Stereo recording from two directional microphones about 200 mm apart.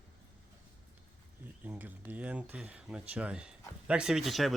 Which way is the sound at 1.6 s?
10° right (ahead or behind).